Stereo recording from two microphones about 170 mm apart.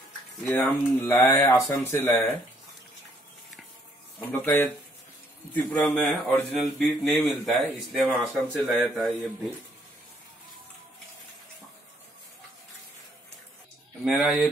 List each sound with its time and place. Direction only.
0.5 s speech: 10° left (ahead or behind)
4.3 s a man's voice: 10° left (ahead or behind)
14.0 s a man's voice: centre (ahead or behind)